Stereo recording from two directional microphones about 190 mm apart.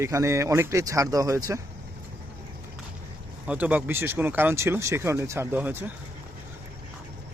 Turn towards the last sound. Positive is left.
turn(degrees=-10)  # may be behind; listen again after turning